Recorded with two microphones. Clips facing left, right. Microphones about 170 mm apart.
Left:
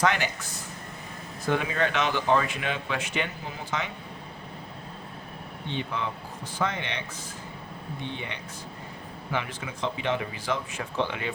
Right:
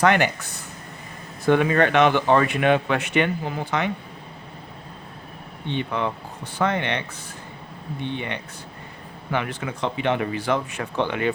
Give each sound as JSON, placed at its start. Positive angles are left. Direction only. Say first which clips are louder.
{"t": 0.0, "sound": "speech", "louder": "right 7 dB", "side_deg": -60}
{"t": 5.7, "sound": "speech", "louder": "right 6 dB", "side_deg": -60}
{"t": 8.1, "sound": "speech", "louder": "right 6 dB", "side_deg": -60}